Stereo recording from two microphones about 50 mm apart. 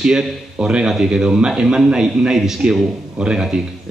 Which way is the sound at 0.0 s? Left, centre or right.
Centre.